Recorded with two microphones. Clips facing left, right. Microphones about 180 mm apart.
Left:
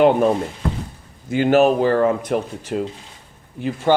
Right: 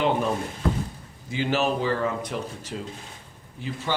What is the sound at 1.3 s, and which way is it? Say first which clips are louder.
Speech: left 10 dB; 55° left (ahead or behind).